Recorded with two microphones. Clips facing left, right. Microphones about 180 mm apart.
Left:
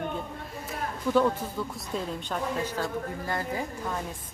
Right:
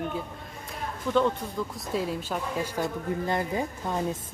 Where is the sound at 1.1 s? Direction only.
5° left (ahead or behind).